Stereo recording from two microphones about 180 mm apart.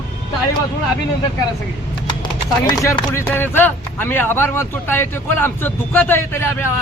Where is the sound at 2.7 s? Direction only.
25° left (ahead or behind).